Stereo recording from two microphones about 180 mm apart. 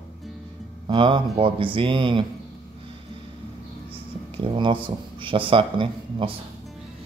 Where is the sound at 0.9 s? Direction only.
30° right (ahead or behind).